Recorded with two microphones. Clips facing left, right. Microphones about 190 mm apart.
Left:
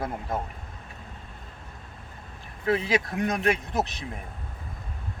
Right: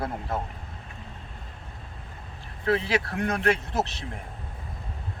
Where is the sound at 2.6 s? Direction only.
15° left (ahead or behind).